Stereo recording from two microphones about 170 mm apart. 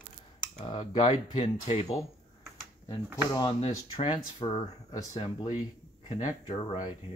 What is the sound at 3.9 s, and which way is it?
Speech, 25° left (ahead or behind).